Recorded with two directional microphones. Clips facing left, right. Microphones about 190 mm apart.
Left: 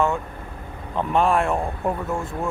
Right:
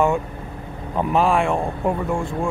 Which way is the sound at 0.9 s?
Centre (ahead or behind).